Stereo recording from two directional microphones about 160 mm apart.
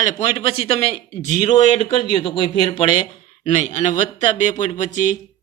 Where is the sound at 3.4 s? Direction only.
50° left (ahead or behind).